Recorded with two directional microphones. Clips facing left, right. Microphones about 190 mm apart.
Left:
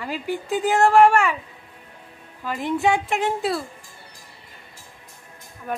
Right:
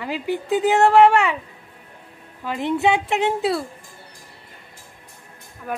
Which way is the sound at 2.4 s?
20° right (ahead or behind).